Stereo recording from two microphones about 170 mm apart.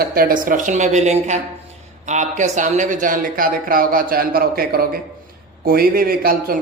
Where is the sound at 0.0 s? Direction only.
60° right (ahead or behind).